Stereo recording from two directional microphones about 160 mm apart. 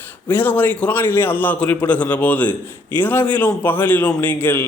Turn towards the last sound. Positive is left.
turn(degrees=15)  # may be behind; listen again after turning